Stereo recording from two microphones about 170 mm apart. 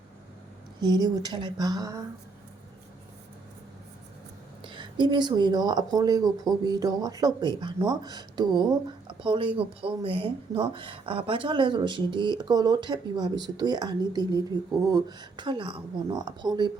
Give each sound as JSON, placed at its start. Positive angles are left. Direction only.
{"t": 0.8, "sound": "speech", "side_deg": -25}
{"t": 4.6, "sound": "speech", "side_deg": -30}